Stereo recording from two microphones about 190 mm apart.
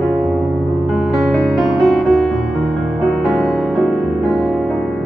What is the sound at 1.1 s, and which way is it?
Music, centre (ahead or behind).